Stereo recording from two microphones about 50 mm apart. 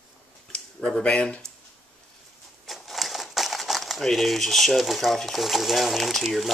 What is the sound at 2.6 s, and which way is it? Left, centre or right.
Crumpling, centre.